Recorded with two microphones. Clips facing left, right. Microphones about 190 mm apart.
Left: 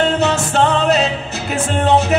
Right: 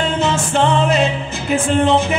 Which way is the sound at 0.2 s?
40° left (ahead or behind).